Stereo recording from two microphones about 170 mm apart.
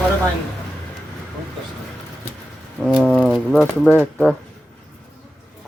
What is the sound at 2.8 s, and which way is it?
Speech, centre (ahead or behind).